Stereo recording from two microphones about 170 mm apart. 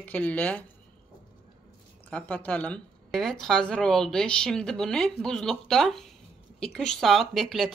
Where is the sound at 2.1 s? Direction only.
5° left (ahead or behind).